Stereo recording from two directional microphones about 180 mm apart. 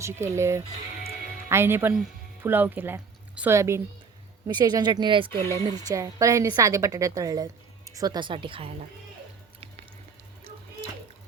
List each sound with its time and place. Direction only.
0.0 s a woman's voice: 15° right (ahead or behind)